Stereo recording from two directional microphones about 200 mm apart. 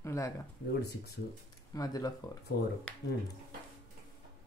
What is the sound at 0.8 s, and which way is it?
Speech, 55° left (ahead or behind).